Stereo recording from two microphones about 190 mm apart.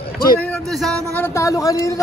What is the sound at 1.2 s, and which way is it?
Speech, 15° left (ahead or behind).